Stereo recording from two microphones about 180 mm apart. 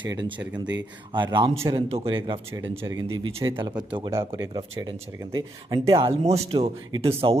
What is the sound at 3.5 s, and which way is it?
Speech, 30° right (ahead or behind).